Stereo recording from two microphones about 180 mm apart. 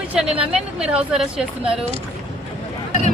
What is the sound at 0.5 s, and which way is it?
Speech, 5° right (ahead or behind).